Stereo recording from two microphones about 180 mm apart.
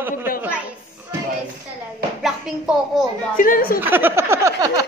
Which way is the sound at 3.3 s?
50° left (ahead or behind).